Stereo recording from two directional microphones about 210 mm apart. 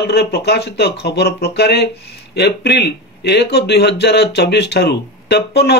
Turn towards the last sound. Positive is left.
turn(degrees=50)  # may be behind; listen again after turning